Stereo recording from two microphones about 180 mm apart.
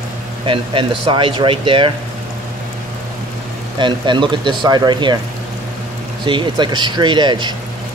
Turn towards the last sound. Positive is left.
turn(degrees=-25)  # may be behind; listen again after turning